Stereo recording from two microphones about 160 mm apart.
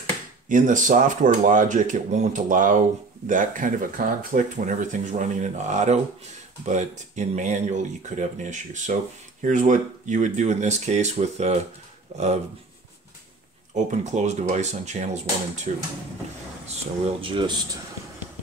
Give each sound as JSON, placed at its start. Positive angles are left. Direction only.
{"t": 0.5, "sound": "speech", "side_deg": -55}
{"t": 13.8, "sound": "speech", "side_deg": -45}
{"t": 16.6, "sound": "speech", "side_deg": -35}